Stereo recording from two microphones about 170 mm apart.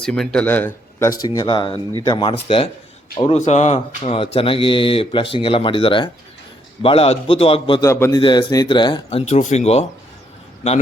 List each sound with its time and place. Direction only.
0.0 s speech: 5° left (ahead or behind); by 2.3 s 30° left (ahead or behind)
3.3 s speech: 45° left (ahead or behind)
7.8 s speech: 15° left (ahead or behind); by 9.8 s 40° left (ahead or behind)